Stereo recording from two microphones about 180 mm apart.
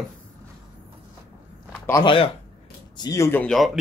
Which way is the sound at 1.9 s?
25° left (ahead or behind).